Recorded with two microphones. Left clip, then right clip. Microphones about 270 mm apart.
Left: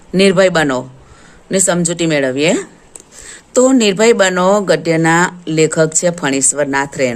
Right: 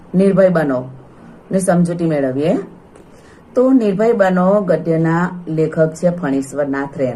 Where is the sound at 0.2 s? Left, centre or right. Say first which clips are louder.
Left 2 dB; left.